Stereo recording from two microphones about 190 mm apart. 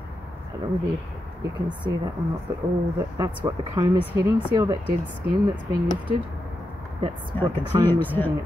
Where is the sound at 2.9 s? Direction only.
15° right (ahead or behind).